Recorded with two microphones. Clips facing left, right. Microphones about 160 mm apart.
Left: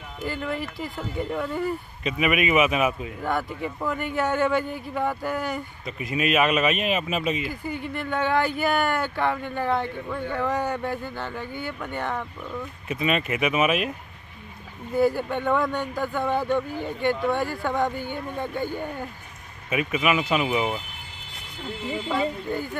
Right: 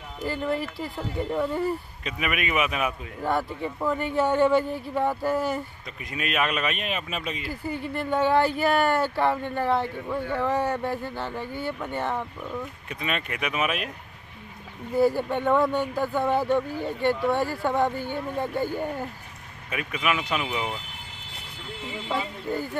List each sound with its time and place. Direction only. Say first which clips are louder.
0.2 s speech: right 1 dB; 35° right (ahead or behind)
0.7 s speech: even; centre (ahead or behind)
7.4 s speech: even; 35° right (ahead or behind)
9.1 s speech: right 1 dB; 5° right (ahead or behind)
15.0 s speech: even; centre (ahead or behind)
19.7 s speech: left 4 dB; 5° left (ahead or behind)